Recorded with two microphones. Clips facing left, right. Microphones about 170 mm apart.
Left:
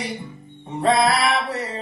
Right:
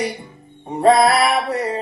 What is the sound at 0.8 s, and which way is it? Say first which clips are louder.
Music: right 5 dB; 50° right (ahead or behind).